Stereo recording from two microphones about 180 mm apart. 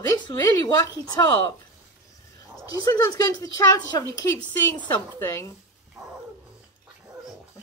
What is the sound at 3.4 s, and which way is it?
A woman's voice, 20° left (ahead or behind).